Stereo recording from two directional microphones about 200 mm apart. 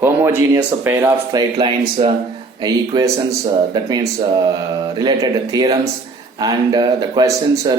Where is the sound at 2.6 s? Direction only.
20° right (ahead or behind).